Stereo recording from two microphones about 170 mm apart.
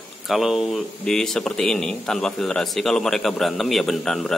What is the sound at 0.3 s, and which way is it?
Speech, centre (ahead or behind).